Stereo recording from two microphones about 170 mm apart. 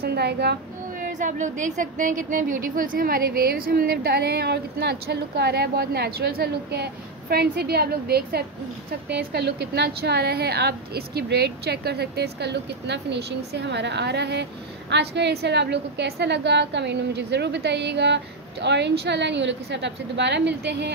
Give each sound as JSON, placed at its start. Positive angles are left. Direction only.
{"t": 0.0, "sound": "a woman's voice", "side_deg": -70}
{"t": 1.1, "sound": "a woman's voice", "side_deg": -45}